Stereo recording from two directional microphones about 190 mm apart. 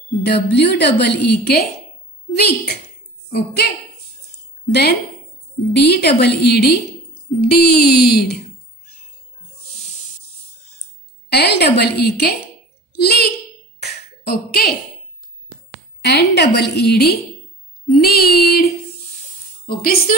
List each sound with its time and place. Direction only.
0.2 s a woman's voice: 60° left (ahead or behind)
5.7 s a woman's voice: 60° left (ahead or behind)
11.2 s a woman's voice: 60° left (ahead or behind)
13.7 s a sound: 55° left (ahead or behind)
16.0 s a woman's voice: 60° left (ahead or behind)